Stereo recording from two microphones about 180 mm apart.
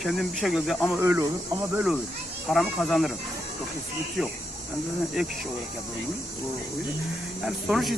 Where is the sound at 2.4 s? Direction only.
Centre (ahead or behind).